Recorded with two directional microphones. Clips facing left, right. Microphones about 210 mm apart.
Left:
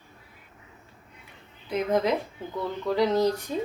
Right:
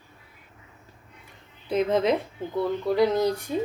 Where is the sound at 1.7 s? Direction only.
25° right (ahead or behind).